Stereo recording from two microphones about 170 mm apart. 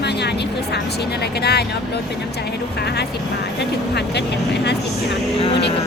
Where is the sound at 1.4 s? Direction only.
70° left (ahead or behind).